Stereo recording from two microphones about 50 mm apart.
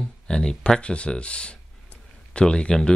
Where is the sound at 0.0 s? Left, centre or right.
Centre.